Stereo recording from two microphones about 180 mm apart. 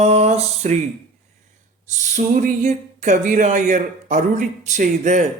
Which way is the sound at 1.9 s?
40° right (ahead or behind).